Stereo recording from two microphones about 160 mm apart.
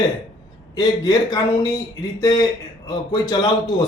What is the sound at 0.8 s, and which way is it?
Speech, 25° left (ahead or behind).